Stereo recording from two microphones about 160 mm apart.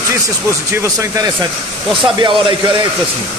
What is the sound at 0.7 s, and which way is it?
A man's voice, 20° right (ahead or behind).